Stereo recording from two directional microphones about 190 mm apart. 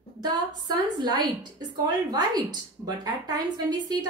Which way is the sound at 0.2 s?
20° right (ahead or behind).